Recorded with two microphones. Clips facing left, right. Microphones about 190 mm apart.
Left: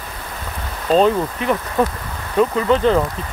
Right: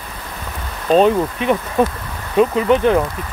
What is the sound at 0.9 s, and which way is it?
Speech, 20° right (ahead or behind).